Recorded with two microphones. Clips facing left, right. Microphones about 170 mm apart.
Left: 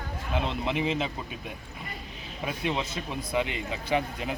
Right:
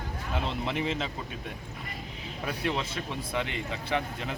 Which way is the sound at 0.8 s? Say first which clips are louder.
Left 3 dB; 10° left (ahead or behind).